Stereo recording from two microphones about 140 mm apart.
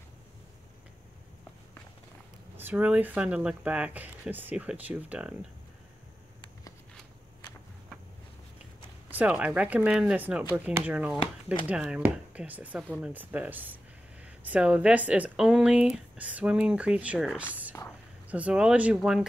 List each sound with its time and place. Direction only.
2.5 s speech: 15° right (ahead or behind)
9.1 s speech: 10° right (ahead or behind)
17.8 s a sound: 25° left (ahead or behind)
18.3 s speech: 10° right (ahead or behind)